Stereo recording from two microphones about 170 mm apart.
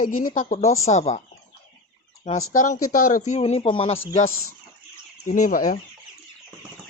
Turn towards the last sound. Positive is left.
turn(degrees=50)  # may be behind; listen again after turning